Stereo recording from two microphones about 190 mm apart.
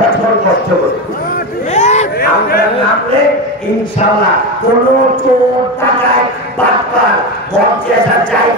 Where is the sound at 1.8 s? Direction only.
35° left (ahead or behind).